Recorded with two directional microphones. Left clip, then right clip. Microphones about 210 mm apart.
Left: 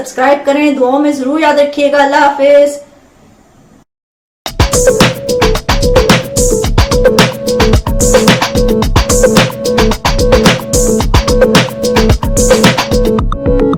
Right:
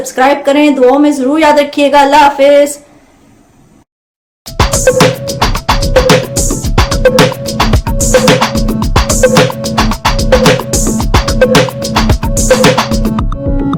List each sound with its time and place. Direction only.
0.2 s speech: 25° right (ahead or behind)
4.4 s music: centre (ahead or behind)